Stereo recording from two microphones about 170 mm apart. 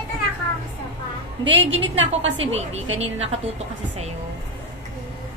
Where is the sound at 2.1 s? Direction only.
40° right (ahead or behind).